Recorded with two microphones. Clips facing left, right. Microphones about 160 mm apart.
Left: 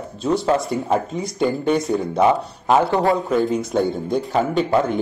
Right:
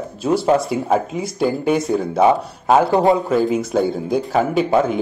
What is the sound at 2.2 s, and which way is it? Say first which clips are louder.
Speech: right 3 dB; 20° right (ahead or behind).